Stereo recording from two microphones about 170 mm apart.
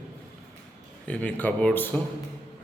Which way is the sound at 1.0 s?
10° left (ahead or behind).